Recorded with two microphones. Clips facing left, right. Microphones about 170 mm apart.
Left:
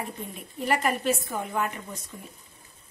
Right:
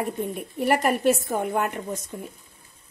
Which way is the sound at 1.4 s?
50° right (ahead or behind).